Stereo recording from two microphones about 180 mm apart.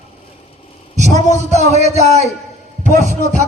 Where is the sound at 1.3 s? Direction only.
40° left (ahead or behind).